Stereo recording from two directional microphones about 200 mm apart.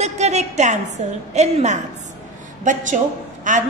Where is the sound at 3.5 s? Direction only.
40° right (ahead or behind).